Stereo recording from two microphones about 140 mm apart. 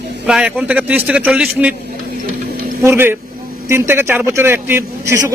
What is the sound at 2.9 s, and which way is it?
A man's voice, 15° right (ahead or behind).